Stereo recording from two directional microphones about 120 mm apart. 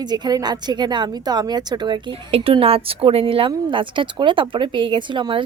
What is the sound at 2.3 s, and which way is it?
A woman's voice, 55° right (ahead or behind).